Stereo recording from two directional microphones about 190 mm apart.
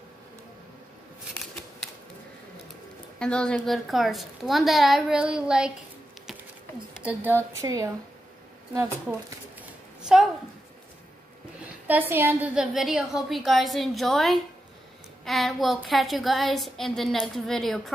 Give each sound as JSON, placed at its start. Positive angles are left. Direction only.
{"t": 1.4, "sound": "shuffling cards", "side_deg": 0}
{"t": 3.2, "sound": "a woman's voice", "side_deg": 5}
{"t": 7.0, "sound": "speech", "side_deg": -10}
{"t": 9.6, "sound": "a sound", "side_deg": -5}
{"t": 11.9, "sound": "a woman's voice", "side_deg": -10}